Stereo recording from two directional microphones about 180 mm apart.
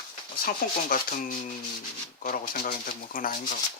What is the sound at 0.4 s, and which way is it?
Speech, 55° left (ahead or behind).